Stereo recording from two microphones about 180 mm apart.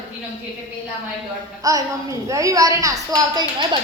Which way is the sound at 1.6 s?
20° right (ahead or behind).